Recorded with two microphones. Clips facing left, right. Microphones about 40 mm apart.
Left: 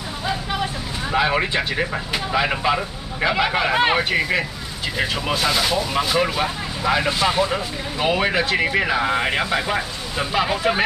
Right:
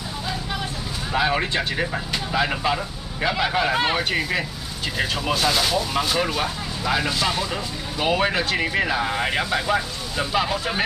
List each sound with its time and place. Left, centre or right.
1.1 s speech: centre
4.0 s speech: centre
6.2 s speech: centre
8.0 s speech: centre